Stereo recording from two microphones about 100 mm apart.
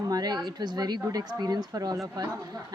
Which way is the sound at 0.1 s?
40° right (ahead or behind).